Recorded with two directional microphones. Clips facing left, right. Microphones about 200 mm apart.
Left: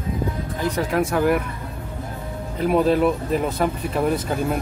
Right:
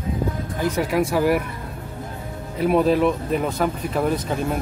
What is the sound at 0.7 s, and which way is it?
Speech, 5° right (ahead or behind).